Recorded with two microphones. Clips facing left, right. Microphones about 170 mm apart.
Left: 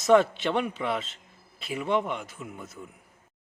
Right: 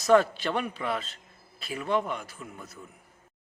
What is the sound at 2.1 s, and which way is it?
Speech, 20° left (ahead or behind).